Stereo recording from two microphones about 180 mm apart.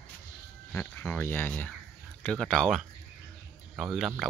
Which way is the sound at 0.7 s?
10° left (ahead or behind).